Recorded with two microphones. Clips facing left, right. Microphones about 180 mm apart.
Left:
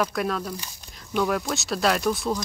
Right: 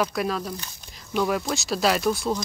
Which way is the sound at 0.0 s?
Centre (ahead or behind).